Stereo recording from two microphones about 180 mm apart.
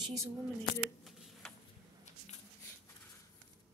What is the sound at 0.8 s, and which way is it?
Shuffling cards, centre (ahead or behind).